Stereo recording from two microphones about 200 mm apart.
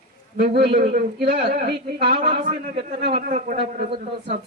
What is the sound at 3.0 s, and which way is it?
Speech, 55° right (ahead or behind).